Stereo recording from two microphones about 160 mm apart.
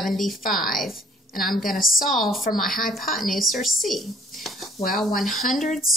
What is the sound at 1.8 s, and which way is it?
Speech, 60° left (ahead or behind).